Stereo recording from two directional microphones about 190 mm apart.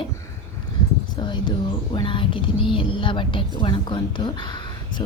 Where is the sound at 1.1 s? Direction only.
25° left (ahead or behind).